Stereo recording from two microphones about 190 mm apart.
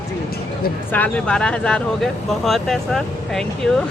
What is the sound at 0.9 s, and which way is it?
Speech, 5° left (ahead or behind).